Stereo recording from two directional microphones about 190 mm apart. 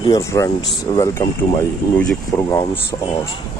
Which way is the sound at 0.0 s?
15° left (ahead or behind).